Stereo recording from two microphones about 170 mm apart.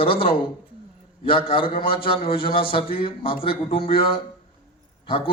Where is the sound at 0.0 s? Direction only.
30° left (ahead or behind).